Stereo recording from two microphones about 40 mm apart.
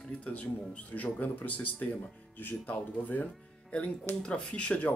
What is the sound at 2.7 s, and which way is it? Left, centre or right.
Speech, left.